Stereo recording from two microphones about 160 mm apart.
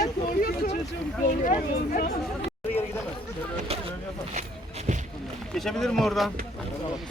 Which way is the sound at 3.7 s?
40° right (ahead or behind).